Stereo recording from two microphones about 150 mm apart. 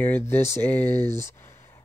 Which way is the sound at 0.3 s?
15° left (ahead or behind).